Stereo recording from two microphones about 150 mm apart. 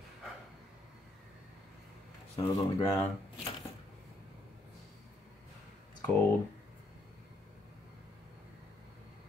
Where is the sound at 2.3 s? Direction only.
25° left (ahead or behind).